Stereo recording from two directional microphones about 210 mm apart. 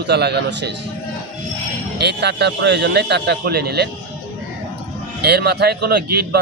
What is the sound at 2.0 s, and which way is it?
Speech, 55° right (ahead or behind).